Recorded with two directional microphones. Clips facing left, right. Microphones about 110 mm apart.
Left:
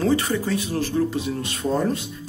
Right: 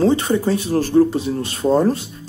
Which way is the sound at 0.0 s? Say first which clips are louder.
Right 5 dB; 30° right (ahead or behind).